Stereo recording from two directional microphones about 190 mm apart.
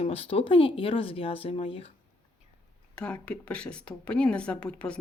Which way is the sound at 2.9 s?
5° left (ahead or behind).